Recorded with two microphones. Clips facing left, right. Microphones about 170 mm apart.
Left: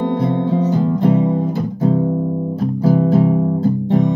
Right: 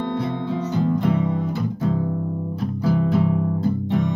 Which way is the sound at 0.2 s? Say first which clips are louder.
Left 8 dB; 40° left (ahead or behind).